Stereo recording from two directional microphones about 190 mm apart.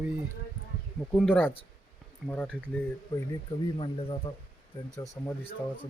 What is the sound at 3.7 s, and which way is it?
Speech, 25° left (ahead or behind).